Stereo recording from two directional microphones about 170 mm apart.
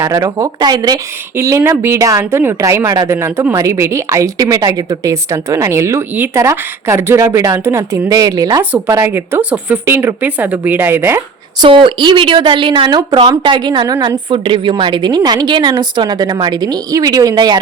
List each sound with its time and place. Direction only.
0.0 s a woman's voice: 20° right (ahead or behind)
11.6 s speech: 30° right (ahead or behind)